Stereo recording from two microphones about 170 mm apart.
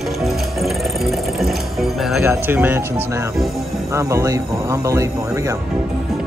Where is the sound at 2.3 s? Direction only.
10° right (ahead or behind).